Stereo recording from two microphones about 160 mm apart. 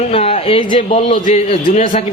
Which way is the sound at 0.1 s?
40° left (ahead or behind).